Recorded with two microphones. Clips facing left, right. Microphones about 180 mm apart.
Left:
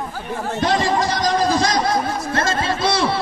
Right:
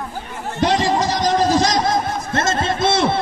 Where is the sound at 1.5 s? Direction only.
20° right (ahead or behind).